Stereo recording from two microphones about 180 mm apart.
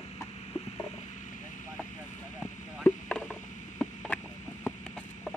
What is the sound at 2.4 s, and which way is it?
Radio, 5° left (ahead or behind).